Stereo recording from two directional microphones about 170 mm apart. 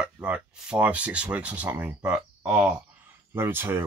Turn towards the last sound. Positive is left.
turn(degrees=-15)  # may be behind; listen again after turning